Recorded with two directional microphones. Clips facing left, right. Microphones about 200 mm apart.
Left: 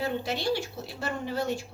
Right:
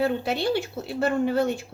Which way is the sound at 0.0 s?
55° right (ahead or behind).